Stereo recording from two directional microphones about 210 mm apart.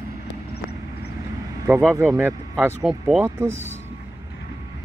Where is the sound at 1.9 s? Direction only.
10° right (ahead or behind).